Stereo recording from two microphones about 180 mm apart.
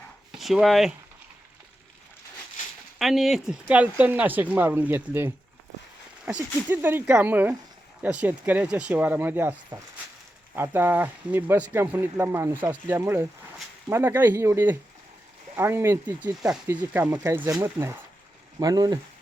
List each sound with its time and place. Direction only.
0.3 s speech: centre (ahead or behind)
3.0 s speech: centre (ahead or behind); by 18.9 s 20° right (ahead or behind)